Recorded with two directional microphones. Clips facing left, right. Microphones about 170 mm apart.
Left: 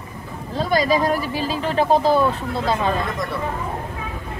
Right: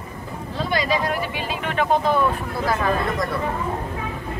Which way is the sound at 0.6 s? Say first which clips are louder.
Left 4 dB; 40° left (ahead or behind).